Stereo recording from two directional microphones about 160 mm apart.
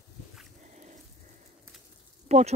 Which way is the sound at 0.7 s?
50° right (ahead or behind).